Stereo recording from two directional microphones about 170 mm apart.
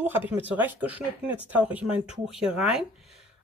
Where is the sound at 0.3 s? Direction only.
10° right (ahead or behind).